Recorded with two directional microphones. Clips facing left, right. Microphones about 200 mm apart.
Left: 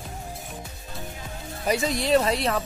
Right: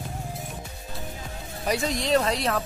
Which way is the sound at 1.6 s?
Centre (ahead or behind).